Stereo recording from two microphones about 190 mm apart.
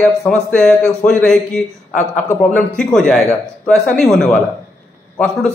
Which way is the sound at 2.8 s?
5° left (ahead or behind).